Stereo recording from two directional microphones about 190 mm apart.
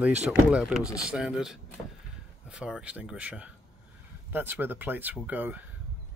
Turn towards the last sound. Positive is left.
turn(degrees=-10)  # may be behind; listen again after turning